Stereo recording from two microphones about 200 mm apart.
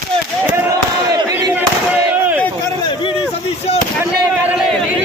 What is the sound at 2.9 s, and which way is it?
Speech, 25° left (ahead or behind).